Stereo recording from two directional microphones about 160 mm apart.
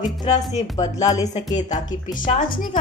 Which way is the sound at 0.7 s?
25° left (ahead or behind).